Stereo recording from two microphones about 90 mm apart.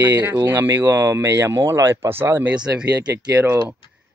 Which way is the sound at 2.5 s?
10° right (ahead or behind).